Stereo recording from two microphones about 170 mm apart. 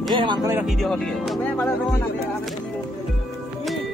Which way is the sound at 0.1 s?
25° right (ahead or behind).